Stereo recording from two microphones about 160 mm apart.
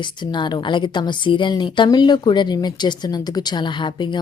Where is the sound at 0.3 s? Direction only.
30° left (ahead or behind).